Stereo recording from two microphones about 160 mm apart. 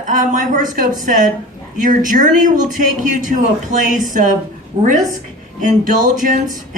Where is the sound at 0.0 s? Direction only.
55° right (ahead or behind).